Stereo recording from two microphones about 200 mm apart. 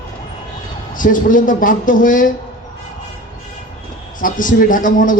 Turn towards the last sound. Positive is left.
turn(degrees=40)  # may be behind; listen again after turning